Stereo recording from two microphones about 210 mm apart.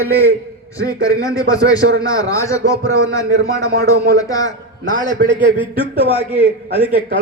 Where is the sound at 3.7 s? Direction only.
50° right (ahead or behind).